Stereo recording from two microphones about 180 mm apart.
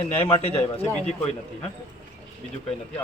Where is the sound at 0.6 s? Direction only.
35° left (ahead or behind).